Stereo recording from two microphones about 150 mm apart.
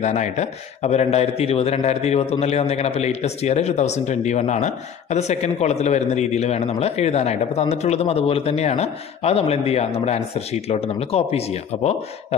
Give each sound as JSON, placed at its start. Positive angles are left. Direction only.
{"t": 0.0, "sound": "a man's voice", "side_deg": 50}